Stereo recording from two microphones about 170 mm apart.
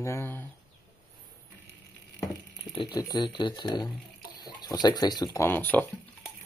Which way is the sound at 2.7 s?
25° left (ahead or behind).